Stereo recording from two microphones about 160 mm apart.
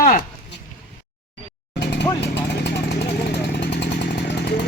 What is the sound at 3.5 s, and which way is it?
Chainsaw, 90° left.